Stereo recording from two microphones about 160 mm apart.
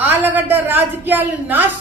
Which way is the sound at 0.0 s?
10° right (ahead or behind).